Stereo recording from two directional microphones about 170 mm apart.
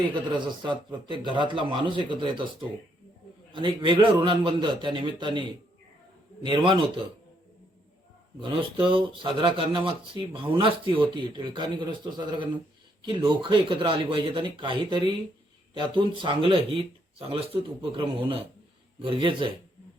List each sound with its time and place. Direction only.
0.1 s speech: 25° right (ahead or behind)
8.4 s speech: 30° right (ahead or behind)